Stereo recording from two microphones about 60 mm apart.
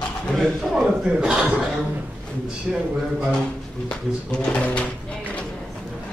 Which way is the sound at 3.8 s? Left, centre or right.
Centre.